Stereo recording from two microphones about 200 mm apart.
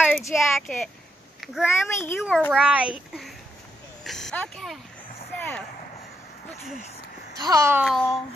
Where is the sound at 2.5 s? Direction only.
5° right (ahead or behind).